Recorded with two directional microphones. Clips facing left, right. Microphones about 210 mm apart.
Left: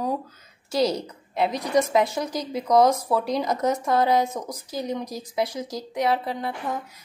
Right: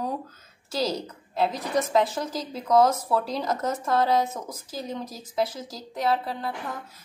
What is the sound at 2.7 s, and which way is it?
Speech, 15° left (ahead or behind).